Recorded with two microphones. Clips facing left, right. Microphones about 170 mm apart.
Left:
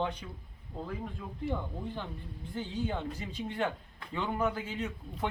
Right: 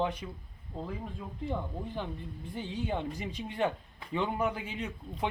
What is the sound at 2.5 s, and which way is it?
Speech, 15° right (ahead or behind).